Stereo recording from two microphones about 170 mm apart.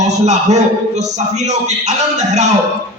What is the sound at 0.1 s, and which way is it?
A man's voice, 40° right (ahead or behind).